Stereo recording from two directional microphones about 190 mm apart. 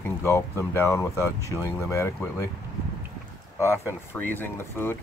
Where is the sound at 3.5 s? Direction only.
15° left (ahead or behind).